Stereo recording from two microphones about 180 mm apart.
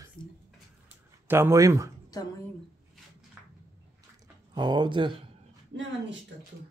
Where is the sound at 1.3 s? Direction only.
15° right (ahead or behind).